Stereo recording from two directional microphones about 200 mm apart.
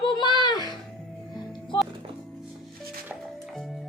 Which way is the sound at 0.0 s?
20° left (ahead or behind).